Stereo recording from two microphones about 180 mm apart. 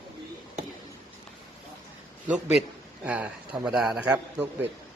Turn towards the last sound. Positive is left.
turn(degrees=-5)  # may be behind; listen again after turning